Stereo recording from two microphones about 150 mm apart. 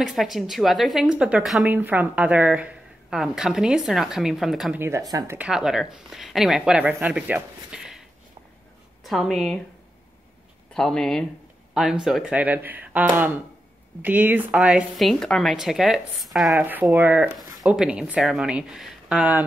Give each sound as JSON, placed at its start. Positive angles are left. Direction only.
{"t": 0.0, "sound": "a woman's voice", "side_deg": 0}
{"t": 4.7, "sound": "speech", "side_deg": -20}
{"t": 5.4, "sound": "a woman's voice", "side_deg": -5}
{"t": 9.0, "sound": "a woman's voice", "side_deg": 0}
{"t": 10.7, "sound": "a woman's voice", "side_deg": 5}
{"t": 16.9, "sound": "speech", "side_deg": -10}